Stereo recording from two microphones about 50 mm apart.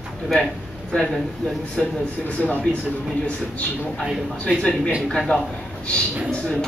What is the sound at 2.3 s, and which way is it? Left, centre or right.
Speech, left.